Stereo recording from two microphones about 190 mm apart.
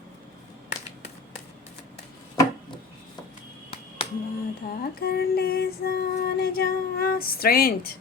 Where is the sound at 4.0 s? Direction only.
30° left (ahead or behind).